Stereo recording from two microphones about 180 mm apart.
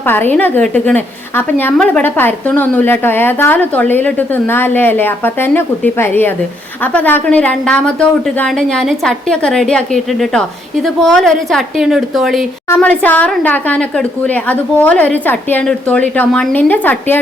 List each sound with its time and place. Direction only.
0.0 s a woman's voice: 10° left (ahead or behind)
12.6 s a woman's voice: 10° left (ahead or behind)